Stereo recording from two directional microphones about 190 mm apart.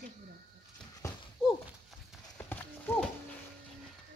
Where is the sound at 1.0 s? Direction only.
15° left (ahead or behind).